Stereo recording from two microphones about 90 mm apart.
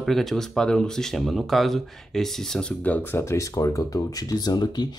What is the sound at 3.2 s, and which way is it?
Speech, 35° left (ahead or behind).